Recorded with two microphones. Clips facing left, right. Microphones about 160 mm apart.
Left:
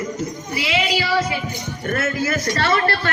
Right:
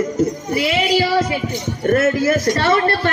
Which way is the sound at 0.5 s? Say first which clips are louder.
Right 5 dB; 50° right (ahead or behind).